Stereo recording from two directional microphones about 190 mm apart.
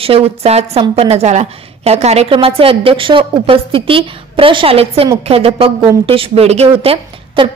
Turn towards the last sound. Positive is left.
turn(degrees=-30)  # may be behind; listen again after turning